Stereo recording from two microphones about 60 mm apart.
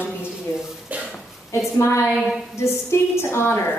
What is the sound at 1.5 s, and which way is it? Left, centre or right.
Speech, left.